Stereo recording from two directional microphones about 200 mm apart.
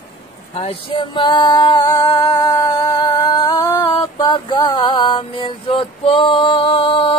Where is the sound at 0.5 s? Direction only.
30° left (ahead or behind).